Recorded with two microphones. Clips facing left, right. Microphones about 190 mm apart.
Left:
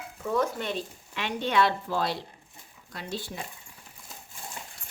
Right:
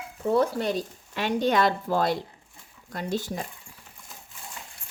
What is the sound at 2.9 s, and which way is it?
Speech, 45° right (ahead or behind).